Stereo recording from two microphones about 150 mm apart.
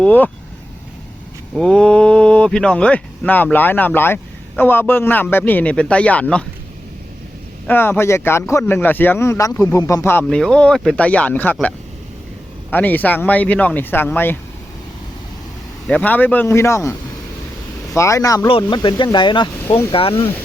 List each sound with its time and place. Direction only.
0.0 s speech: 10° left (ahead or behind)
1.5 s speech: 5° left (ahead or behind)
7.7 s speech: 15° left (ahead or behind)
9.7 s speech: 20° left (ahead or behind)
10.2 s speech: 5° left (ahead or behind)
12.7 s speech: 10° left (ahead or behind)
15.9 s speech: 10° left (ahead or behind)
17.9 s speech: 20° left (ahead or behind); by 20.2 s 35° left (ahead or behind)